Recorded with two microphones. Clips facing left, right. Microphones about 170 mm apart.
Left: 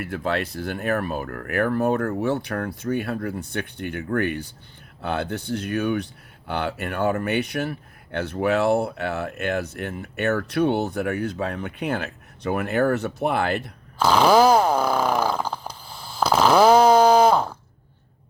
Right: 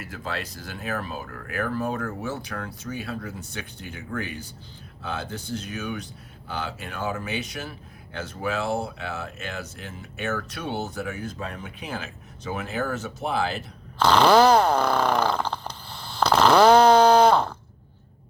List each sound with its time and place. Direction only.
0.0 s speech: 60° left (ahead or behind)
14.0 s fart: 10° left (ahead or behind)